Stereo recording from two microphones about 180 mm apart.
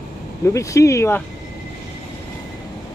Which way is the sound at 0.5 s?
15° left (ahead or behind).